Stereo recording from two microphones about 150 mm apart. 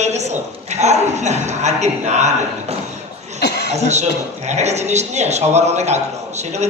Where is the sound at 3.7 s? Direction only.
50° right (ahead or behind).